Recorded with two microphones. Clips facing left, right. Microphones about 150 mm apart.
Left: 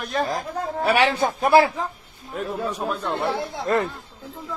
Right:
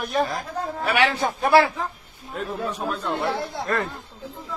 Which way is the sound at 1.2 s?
20° left (ahead or behind).